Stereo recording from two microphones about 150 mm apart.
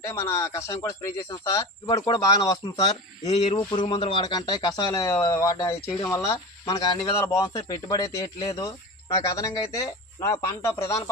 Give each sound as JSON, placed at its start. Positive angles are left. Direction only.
{"t": 0.0, "sound": "speech", "side_deg": 20}